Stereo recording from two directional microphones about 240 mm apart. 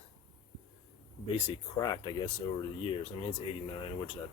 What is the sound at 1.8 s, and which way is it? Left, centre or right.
Speech, centre.